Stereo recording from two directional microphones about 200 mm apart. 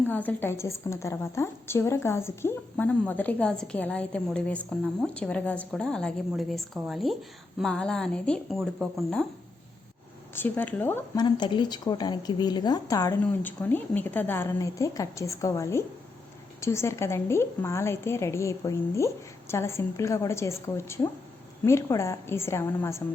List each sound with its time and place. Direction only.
0.0 s a woman's voice: 10° left (ahead or behind)
10.3 s a woman's voice: 10° left (ahead or behind)